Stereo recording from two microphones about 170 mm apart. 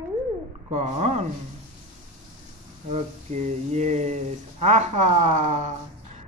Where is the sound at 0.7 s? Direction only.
40° right (ahead or behind).